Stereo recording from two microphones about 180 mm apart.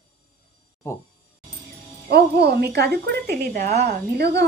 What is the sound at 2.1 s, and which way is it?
Speech, 65° right (ahead or behind).